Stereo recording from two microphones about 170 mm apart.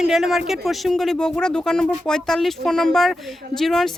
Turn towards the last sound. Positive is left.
turn(degrees=0)  # may be behind; listen again after turning